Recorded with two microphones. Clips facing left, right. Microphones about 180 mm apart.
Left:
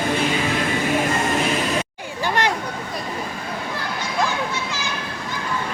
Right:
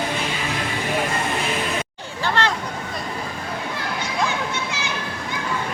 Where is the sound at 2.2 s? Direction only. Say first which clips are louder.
Left 1 dB; 15° left (ahead or behind).